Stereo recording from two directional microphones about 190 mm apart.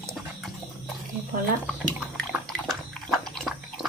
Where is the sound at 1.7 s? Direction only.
5° left (ahead or behind).